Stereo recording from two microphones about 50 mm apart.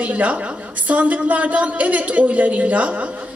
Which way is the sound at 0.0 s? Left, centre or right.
Right.